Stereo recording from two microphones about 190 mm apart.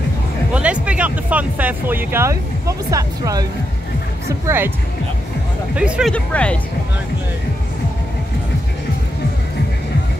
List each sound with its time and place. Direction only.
0.5 s speech: 5° right (ahead or behind)
5.8 s speech: 5° right (ahead or behind)
6.1 s speech: 5° left (ahead or behind)